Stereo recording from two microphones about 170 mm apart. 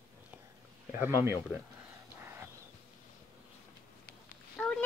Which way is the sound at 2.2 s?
15° right (ahead or behind).